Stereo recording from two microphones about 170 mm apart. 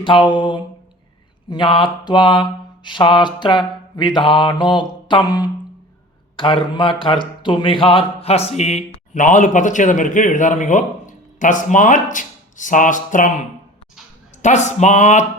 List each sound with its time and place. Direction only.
0.0 s mantra: 30° left (ahead or behind)
6.3 s speech: 30° left (ahead or behind); by 13.3 s 50° left (ahead or behind)
14.4 s speech: 45° left (ahead or behind)